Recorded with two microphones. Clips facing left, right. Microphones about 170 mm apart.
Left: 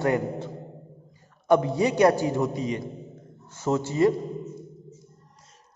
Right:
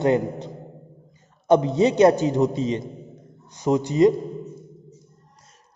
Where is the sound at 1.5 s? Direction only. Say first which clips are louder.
Right 3 dB; 20° right (ahead or behind).